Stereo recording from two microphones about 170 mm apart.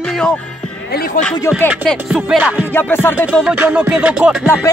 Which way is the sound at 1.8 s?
Centre (ahead or behind).